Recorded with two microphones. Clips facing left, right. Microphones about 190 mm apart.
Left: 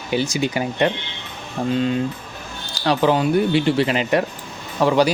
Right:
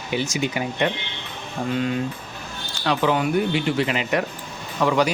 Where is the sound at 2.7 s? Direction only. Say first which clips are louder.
Left 3 dB; 35° left (ahead or behind).